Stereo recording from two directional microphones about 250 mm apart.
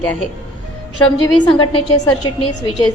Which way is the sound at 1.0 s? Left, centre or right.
Centre.